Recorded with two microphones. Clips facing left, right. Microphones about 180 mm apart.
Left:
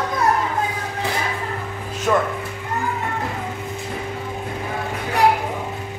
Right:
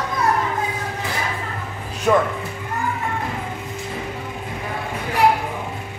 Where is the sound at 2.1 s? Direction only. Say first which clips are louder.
Right 2 dB; 10° right (ahead or behind).